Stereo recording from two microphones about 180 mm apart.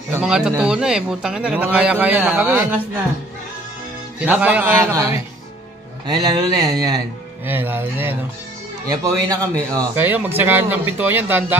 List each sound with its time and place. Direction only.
0.1 s speech: 5° right (ahead or behind)
4.2 s speech: 10° right (ahead or behind)